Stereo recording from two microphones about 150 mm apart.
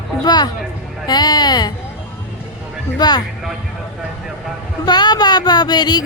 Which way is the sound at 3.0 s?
30° left (ahead or behind).